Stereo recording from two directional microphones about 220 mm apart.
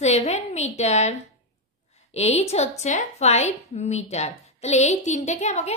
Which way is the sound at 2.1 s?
30° left (ahead or behind).